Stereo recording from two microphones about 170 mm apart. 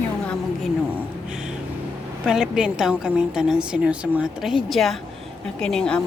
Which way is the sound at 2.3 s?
5° right (ahead or behind).